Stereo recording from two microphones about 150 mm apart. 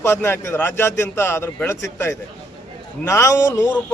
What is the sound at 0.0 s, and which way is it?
A man's voice, 15° left (ahead or behind).